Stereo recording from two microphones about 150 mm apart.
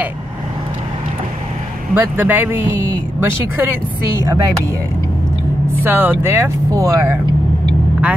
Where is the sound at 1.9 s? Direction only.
10° right (ahead or behind).